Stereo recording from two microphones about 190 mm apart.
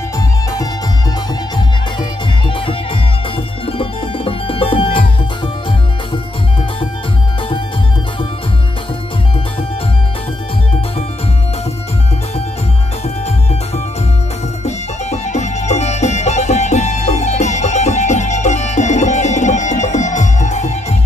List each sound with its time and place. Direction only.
3.6 s music: 30° left (ahead or behind)
14.6 s music: 35° left (ahead or behind)